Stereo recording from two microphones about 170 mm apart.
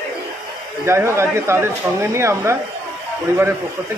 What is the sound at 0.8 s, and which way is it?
Speech, 15° right (ahead or behind).